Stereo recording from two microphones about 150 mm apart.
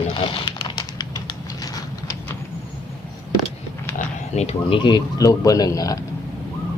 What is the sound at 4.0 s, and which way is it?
Speech, 45° left (ahead or behind).